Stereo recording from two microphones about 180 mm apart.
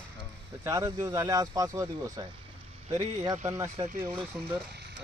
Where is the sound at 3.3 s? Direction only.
10° right (ahead or behind).